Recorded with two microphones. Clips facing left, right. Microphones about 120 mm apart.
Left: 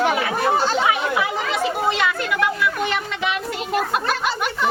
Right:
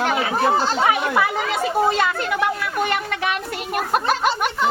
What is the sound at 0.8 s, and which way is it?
Speech, 50° right (ahead or behind).